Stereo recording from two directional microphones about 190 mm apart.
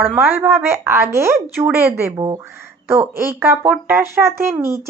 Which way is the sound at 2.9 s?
10° right (ahead or behind).